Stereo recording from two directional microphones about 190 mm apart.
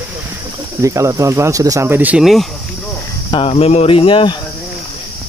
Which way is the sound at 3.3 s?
30° left (ahead or behind).